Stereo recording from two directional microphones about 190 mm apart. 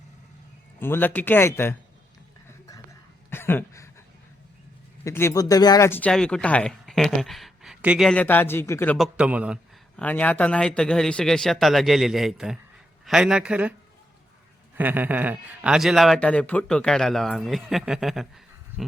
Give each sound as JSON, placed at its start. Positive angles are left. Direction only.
{"t": 0.8, "sound": "speech", "side_deg": 10}
{"t": 3.2, "sound": "a sound", "side_deg": 10}
{"t": 5.0, "sound": "speech", "side_deg": 15}
{"t": 9.0, "sound": "a man's voice", "side_deg": -5}
{"t": 10.0, "sound": "a man's voice", "side_deg": 10}
{"t": 14.8, "sound": "a man's voice", "side_deg": -10}